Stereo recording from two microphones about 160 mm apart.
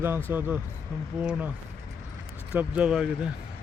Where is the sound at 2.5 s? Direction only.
10° right (ahead or behind).